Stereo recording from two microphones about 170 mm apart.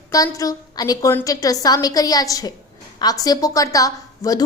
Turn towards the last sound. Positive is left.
turn(degrees=20)  # may be behind; listen again after turning